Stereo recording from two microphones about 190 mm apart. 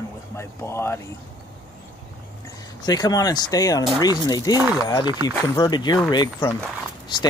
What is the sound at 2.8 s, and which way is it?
Speech, 20° left (ahead or behind).